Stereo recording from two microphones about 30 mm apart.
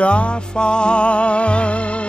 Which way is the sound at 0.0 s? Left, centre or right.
Left.